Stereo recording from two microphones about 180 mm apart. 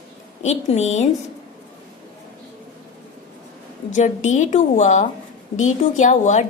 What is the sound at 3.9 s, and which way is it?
A woman's voice, 40° left (ahead or behind).